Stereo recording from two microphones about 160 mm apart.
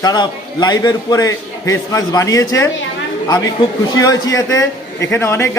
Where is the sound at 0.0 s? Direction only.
25° left (ahead or behind).